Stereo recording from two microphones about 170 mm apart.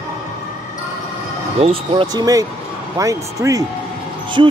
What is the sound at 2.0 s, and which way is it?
Speech, 20° right (ahead or behind).